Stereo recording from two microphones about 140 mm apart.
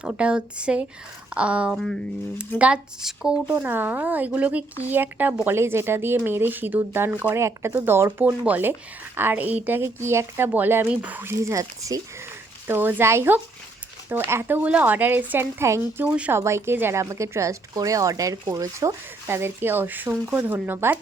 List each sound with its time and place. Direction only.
0.0 s speech: 10° right (ahead or behind)
16.4 s speech: 20° right (ahead or behind)